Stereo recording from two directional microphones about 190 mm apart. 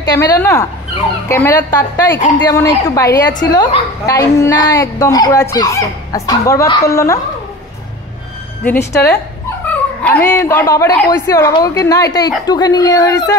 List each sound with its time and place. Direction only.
0.0 s a woman's voice: 20° left (ahead or behind)
8.6 s a woman's voice: 15° left (ahead or behind)